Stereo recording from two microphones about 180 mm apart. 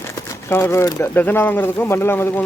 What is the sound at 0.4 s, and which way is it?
Speech, 15° left (ahead or behind).